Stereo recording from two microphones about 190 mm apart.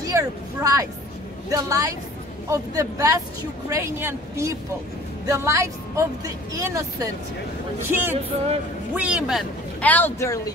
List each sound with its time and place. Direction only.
0.0 s speech: 15° right (ahead or behind); by 10.5 s 15° left (ahead or behind)